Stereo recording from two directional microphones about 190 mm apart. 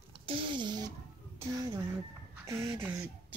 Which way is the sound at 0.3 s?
25° right (ahead or behind).